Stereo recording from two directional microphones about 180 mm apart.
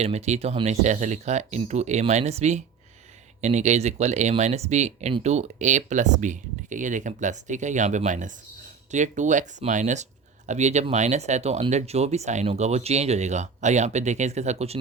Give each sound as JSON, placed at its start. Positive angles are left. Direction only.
{"t": 0.0, "sound": "speech", "side_deg": -35}